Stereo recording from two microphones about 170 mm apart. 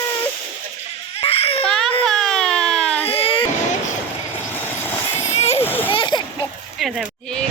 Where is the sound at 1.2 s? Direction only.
35° left (ahead or behind).